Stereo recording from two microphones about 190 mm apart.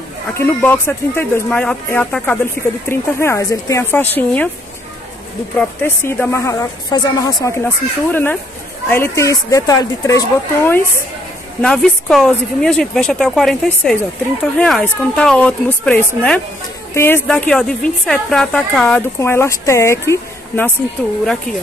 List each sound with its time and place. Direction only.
0.3 s a woman's voice: 10° left (ahead or behind)
5.6 s a woman's voice: 10° left (ahead or behind)
11.6 s a woman's voice: 5° left (ahead or behind)